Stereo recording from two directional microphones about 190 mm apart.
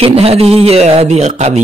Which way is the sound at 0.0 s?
30° right (ahead or behind).